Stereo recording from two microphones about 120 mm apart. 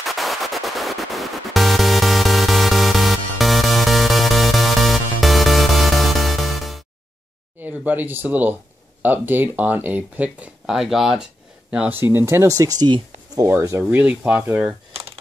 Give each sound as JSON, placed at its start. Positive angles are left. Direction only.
{"t": 0.0, "sound": "music", "side_deg": 0}
{"t": 7.6, "sound": "speech", "side_deg": -15}
{"t": 13.5, "sound": "speech", "side_deg": -25}
{"t": 14.9, "sound": "computer keyboard", "side_deg": -55}